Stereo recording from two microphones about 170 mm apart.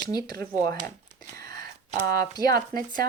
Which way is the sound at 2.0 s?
60° right (ahead or behind).